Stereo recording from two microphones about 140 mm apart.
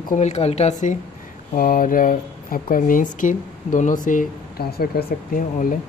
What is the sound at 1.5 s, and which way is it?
Speech, 85° left.